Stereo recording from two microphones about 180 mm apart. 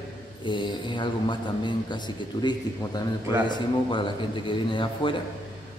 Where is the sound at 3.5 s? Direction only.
25° left (ahead or behind).